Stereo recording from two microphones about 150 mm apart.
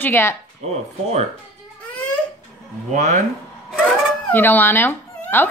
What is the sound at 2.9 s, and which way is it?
Speech, 50° right (ahead or behind).